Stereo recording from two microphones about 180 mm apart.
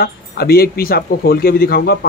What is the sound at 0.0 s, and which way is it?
Speech, 60° left (ahead or behind).